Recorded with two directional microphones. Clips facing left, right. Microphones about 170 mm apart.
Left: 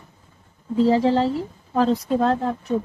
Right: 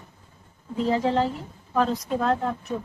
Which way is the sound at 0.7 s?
30° left (ahead or behind).